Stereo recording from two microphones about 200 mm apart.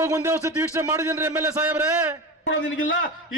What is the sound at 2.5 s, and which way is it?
Speech, 70° left (ahead or behind).